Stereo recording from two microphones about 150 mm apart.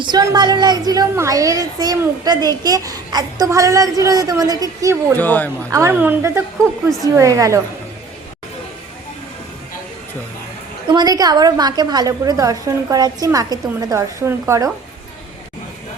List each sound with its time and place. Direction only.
0.0 s a woman's voice: 25° right (ahead or behind)
5.1 s speech: 10° left (ahead or behind)
5.7 s a woman's voice: 15° right (ahead or behind)
10.9 s a woman's voice: 25° right (ahead or behind)